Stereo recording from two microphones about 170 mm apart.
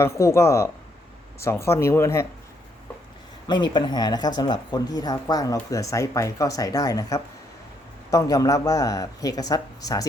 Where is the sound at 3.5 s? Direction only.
25° left (ahead or behind).